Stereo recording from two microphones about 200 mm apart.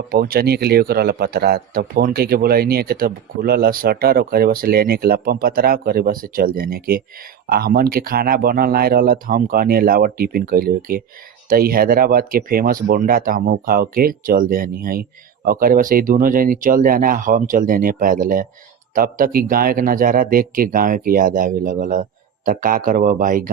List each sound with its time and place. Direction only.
0.1 s speech: 50° right (ahead or behind)